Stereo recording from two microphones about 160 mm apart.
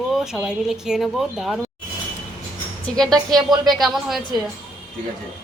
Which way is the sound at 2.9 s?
5° left (ahead or behind).